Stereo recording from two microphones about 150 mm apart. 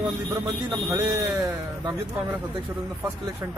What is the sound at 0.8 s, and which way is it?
Speech, 25° right (ahead or behind).